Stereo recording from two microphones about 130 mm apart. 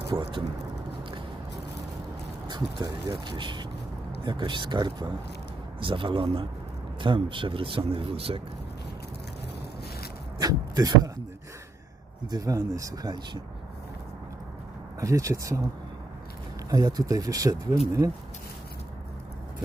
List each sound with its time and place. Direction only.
0.1 s speech: 40° right (ahead or behind)
2.5 s speech: 35° right (ahead or behind)
10.4 s speech: 30° right (ahead or behind)
12.3 s speech: 25° right (ahead or behind)
15.0 s speech: 25° right (ahead or behind)
16.6 s speech: 30° right (ahead or behind)